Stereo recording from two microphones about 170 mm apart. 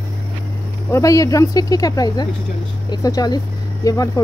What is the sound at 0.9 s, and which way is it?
Speech, 20° left (ahead or behind).